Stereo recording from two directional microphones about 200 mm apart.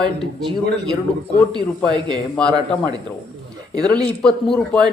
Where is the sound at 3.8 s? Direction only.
5° left (ahead or behind).